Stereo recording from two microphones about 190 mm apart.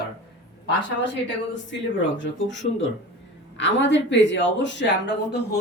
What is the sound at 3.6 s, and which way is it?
Speech, 70° left (ahead or behind).